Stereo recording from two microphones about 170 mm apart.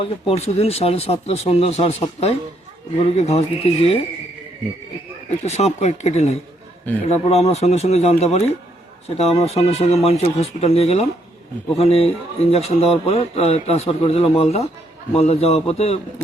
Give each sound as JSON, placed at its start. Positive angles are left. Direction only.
{"t": 0.0, "sound": "speech", "side_deg": 35}
{"t": 5.4, "sound": "speech", "side_deg": 40}